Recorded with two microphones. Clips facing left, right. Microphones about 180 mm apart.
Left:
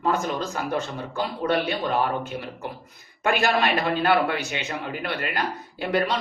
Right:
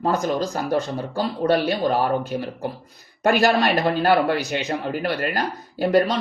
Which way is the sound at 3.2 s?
40° right (ahead or behind).